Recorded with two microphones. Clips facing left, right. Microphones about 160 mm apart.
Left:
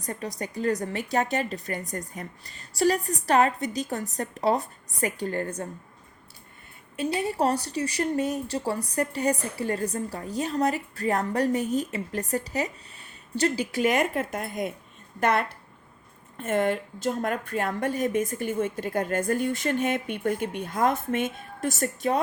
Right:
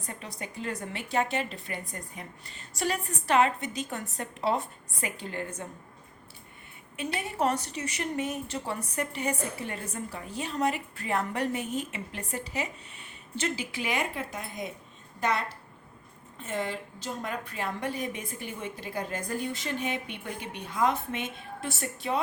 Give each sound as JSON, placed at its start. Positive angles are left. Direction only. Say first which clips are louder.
{"t": 0.0, "sound": "a woman's voice", "louder": "left 7 dB", "side_deg": 40}
{"t": 6.9, "sound": "a woman's voice", "louder": "left 6 dB", "side_deg": 35}